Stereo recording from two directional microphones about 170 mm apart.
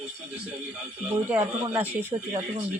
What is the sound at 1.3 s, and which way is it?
Speech, 10° right (ahead or behind).